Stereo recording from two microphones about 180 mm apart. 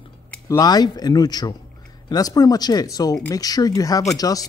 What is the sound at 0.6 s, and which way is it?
Speech, 20° left (ahead or behind).